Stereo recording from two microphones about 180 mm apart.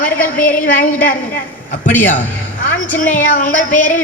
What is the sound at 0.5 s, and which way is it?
A woman's voice, 50° left (ahead or behind).